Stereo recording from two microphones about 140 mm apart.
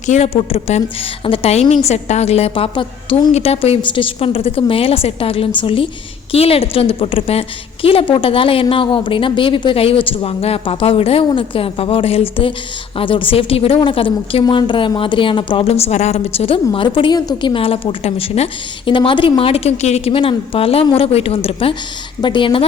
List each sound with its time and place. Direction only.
0.0 s a woman's voice: 60° left (ahead or behind)
0.3 s a woman's voice: 45° left (ahead or behind)